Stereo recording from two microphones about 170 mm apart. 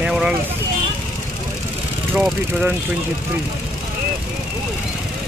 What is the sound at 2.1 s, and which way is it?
Speech, 5° right (ahead or behind).